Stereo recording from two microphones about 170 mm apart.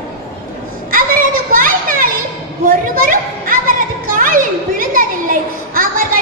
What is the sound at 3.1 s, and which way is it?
Children playing, 55° right (ahead or behind).